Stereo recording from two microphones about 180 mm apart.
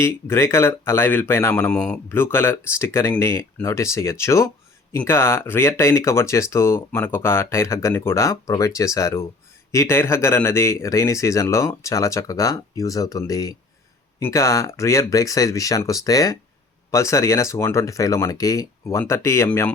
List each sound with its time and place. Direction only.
0.0 s speech: 15° left (ahead or behind)